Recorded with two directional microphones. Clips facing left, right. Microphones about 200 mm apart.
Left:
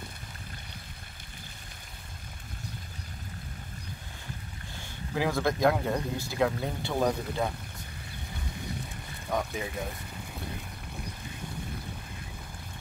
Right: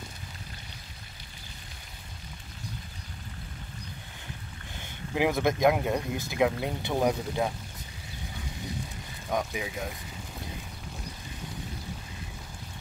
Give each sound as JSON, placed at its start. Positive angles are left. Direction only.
{"t": 4.8, "sound": "speech", "side_deg": -20}
{"t": 9.3, "sound": "speech", "side_deg": 0}